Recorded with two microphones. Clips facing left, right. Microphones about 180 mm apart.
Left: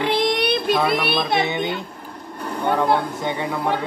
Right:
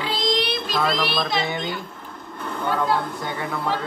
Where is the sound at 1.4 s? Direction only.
20° left (ahead or behind).